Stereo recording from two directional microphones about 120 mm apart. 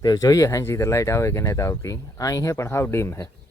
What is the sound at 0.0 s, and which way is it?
Speech, 30° left (ahead or behind).